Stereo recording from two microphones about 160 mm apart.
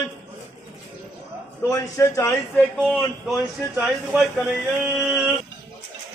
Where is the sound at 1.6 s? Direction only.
15° left (ahead or behind).